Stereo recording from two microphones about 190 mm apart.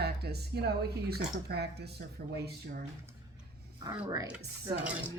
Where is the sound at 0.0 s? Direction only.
60° right (ahead or behind).